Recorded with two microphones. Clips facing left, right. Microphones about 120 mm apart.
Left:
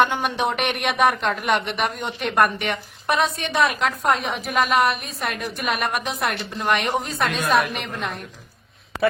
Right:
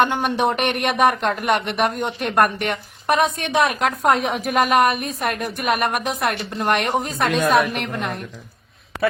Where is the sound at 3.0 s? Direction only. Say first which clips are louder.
Right 3 dB; 45° right (ahead or behind).